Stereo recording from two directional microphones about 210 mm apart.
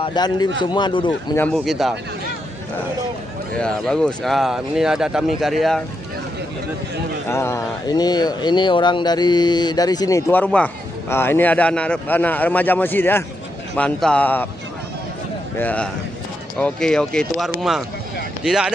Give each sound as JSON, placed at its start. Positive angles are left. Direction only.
{"t": 0.0, "sound": "speech", "side_deg": 20}
{"t": 1.3, "sound": "speech", "side_deg": 5}
{"t": 3.6, "sound": "speech", "side_deg": 5}
{"t": 7.2, "sound": "a man's voice", "side_deg": 15}
{"t": 15.5, "sound": "a man's voice", "side_deg": 5}